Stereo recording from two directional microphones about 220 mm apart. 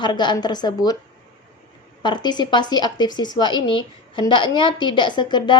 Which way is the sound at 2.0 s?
20° left (ahead or behind).